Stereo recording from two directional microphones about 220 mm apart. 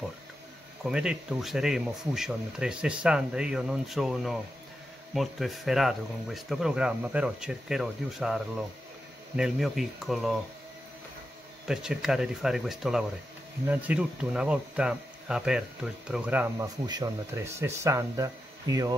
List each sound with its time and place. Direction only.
0.8 s speech: 5° right (ahead or behind)
11.6 s speech: 5° right (ahead or behind)
16.8 s speech: 20° right (ahead or behind)